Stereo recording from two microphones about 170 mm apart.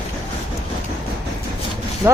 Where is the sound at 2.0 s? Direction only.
15° right (ahead or behind).